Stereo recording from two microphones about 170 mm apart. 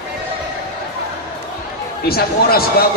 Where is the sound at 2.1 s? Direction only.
65° left (ahead or behind).